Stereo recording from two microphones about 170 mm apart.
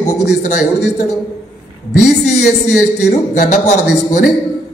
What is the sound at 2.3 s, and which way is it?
Speech, 40° left (ahead or behind).